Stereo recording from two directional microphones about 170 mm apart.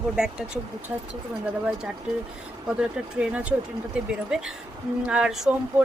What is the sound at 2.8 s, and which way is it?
Speech, 5° right (ahead or behind).